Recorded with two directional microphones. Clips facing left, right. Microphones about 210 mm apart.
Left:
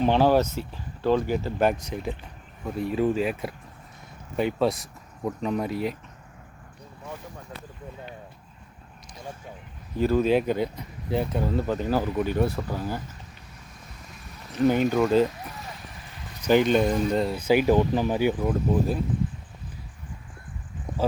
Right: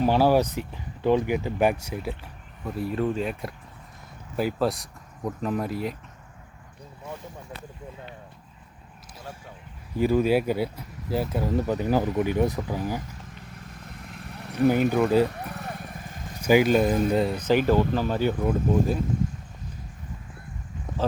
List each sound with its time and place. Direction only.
0.0 s speech: 10° right (ahead or behind)
10.0 s speech: 10° right (ahead or behind)
13.9 s vehicle: 60° right (ahead or behind)
14.7 s speech: 5° right (ahead or behind)
15.3 s vehicle: 65° right (ahead or behind)
16.4 s speech: 10° right (ahead or behind)
17.3 s speech: 10° left (ahead or behind)
18.4 s speech: centre (ahead or behind)